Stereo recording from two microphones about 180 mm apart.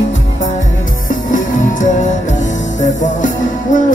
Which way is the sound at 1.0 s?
45° left (ahead or behind).